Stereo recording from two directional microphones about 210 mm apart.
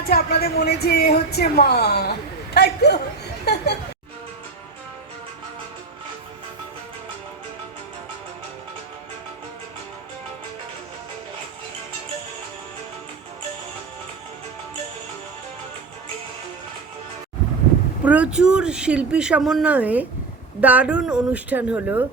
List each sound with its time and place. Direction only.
0.0 s speech: 45° left (ahead or behind)
18.0 s speech: 5° right (ahead or behind)